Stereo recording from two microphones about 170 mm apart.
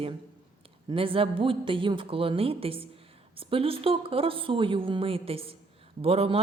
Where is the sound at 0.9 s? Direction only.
30° right (ahead or behind).